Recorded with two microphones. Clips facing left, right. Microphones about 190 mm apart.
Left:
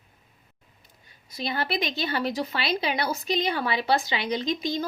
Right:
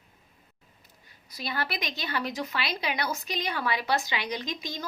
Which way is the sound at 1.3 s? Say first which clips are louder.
Left 5 dB; 25° left (ahead or behind).